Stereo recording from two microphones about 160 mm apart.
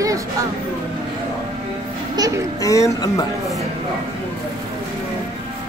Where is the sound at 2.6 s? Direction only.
20° left (ahead or behind).